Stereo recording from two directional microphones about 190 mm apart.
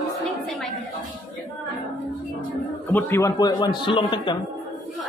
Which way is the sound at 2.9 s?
15° left (ahead or behind).